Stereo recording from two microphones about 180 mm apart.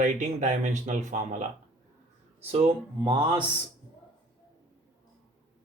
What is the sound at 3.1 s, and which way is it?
Speech, 25° right (ahead or behind).